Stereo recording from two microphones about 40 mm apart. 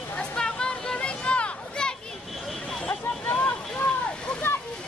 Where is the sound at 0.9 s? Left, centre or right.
Left.